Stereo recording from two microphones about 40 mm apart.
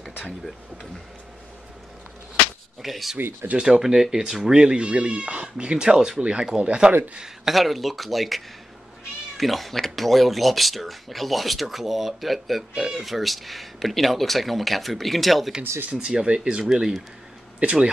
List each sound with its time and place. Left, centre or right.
2.8 s speech: centre
3.5 s speech: right
7.4 s speech: centre
9.4 s speech: centre
15.9 s speech: right